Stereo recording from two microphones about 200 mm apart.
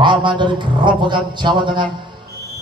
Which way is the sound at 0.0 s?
25° right (ahead or behind).